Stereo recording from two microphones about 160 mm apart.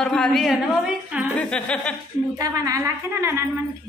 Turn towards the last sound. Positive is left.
turn(degrees=-20)  # may be behind; listen again after turning